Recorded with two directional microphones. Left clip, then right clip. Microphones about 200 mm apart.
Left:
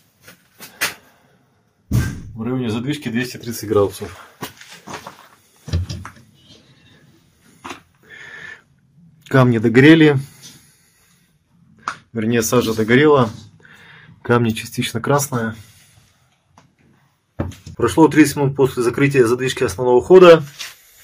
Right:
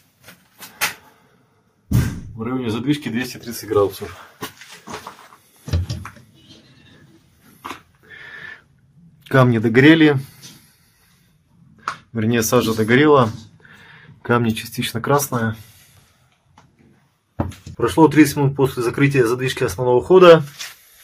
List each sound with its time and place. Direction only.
2.3 s speech: 30° left (ahead or behind)
7.5 s dog: 5° right (ahead or behind)
9.2 s a man's voice: 5° right (ahead or behind)
12.0 s speech: 10° right (ahead or behind)
17.4 s speech: centre (ahead or behind)